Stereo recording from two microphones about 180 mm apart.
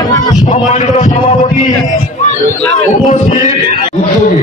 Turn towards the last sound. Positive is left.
turn(degrees=45)  # may be behind; listen again after turning